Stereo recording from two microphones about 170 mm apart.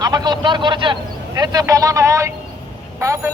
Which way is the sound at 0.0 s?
25° right (ahead or behind).